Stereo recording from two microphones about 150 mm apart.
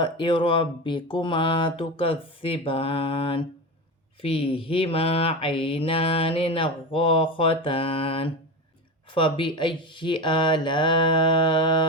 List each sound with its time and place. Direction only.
0.0 s mantra: 35° left (ahead or behind)